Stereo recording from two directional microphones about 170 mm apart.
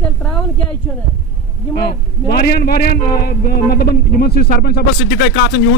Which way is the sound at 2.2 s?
65° left (ahead or behind).